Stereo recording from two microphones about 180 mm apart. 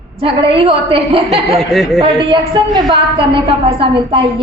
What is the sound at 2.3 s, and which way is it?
A woman's voice, 25° right (ahead or behind).